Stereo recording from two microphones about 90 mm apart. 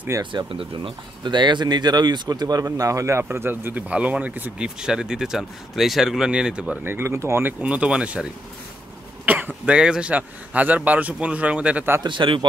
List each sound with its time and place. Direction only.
0.2 s speech: 60° right (ahead or behind); by 4.6 s 20° right (ahead or behind)
4.7 s speech: 10° right (ahead or behind)
6.8 s speech: 25° right (ahead or behind)
7.6 s speech: 15° right (ahead or behind)
12.0 s speech: 65° right (ahead or behind)